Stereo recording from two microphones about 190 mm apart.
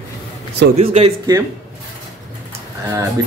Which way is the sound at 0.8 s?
30° right (ahead or behind).